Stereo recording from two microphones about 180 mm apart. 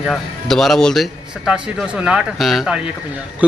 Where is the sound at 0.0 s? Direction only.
Centre (ahead or behind).